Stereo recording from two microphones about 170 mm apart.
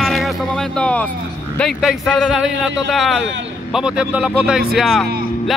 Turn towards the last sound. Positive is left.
turn(degrees=0)  # may be behind; listen again after turning